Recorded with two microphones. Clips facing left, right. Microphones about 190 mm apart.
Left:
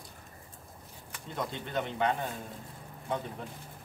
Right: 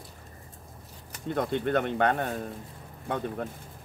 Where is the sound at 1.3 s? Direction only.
60° right (ahead or behind).